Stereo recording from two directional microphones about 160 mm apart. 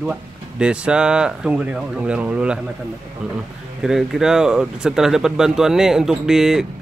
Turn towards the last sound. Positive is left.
turn(degrees=-5)  # may be behind; listen again after turning